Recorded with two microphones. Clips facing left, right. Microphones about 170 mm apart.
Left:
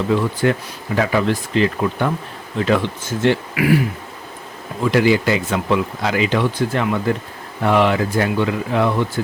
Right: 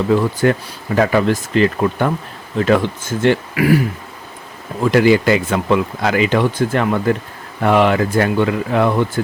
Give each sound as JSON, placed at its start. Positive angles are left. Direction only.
{"t": 0.1, "sound": "speech", "side_deg": -45}
{"t": 4.8, "sound": "speech", "side_deg": -50}